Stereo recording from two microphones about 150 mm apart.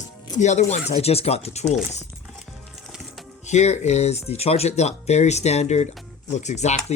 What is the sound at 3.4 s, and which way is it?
Speech, 50° left (ahead or behind).